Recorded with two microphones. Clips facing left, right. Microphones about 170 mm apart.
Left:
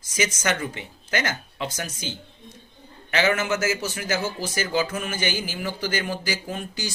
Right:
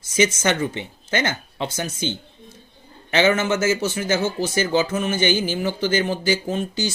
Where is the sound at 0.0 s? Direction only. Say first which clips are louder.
Right 6 dB; 25° right (ahead or behind).